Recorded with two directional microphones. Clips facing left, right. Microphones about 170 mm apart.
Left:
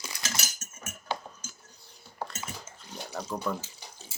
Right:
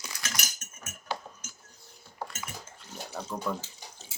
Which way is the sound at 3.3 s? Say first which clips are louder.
Left 2 dB; 10° left (ahead or behind).